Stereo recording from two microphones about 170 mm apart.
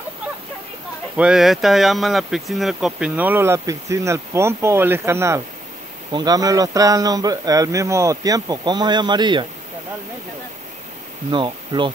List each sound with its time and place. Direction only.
1.1 s speech: 5° right (ahead or behind); by 9.5 s 25° right (ahead or behind)
11.2 s speech: 30° right (ahead or behind)